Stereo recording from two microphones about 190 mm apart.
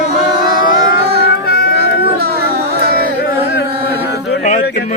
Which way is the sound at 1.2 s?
55° left (ahead or behind).